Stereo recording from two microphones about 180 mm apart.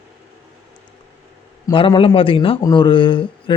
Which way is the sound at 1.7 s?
25° left (ahead or behind).